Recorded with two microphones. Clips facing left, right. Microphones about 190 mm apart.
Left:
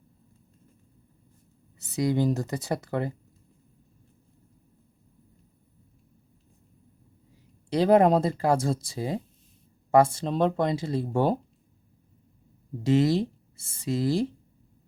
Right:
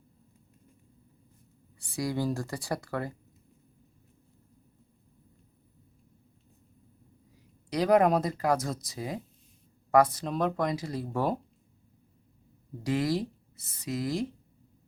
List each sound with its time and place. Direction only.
1.8 s speech: 20° left (ahead or behind)
7.7 s speech: 30° left (ahead or behind)
12.8 s speech: 25° left (ahead or behind)